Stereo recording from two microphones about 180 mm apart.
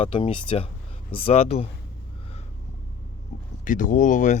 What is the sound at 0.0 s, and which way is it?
Speech, 30° left (ahead or behind).